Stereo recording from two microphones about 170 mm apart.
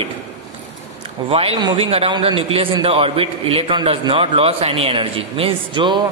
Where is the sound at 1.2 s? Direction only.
35° right (ahead or behind).